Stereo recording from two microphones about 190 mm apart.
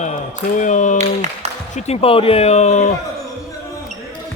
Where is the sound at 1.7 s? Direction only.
30° left (ahead or behind).